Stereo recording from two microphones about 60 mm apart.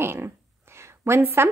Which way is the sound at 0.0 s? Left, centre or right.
Right.